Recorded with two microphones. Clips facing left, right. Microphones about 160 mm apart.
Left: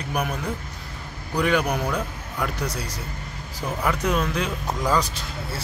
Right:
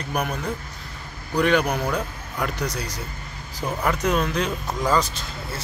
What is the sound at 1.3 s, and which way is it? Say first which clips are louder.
Speech: right 2 dB; 5° left (ahead or behind).